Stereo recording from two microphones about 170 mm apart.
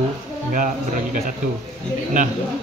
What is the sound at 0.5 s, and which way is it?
Speech, 50° right (ahead or behind).